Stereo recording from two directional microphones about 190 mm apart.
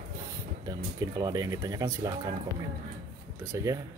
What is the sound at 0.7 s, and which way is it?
Speech, 20° right (ahead or behind).